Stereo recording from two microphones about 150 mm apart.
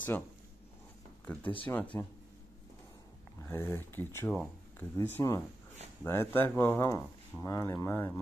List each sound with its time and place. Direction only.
1.2 s speech: 10° left (ahead or behind)
3.4 s speech: 15° left (ahead or behind)